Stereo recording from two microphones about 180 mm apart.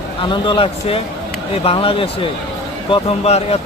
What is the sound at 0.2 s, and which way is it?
Speech, 30° left (ahead or behind).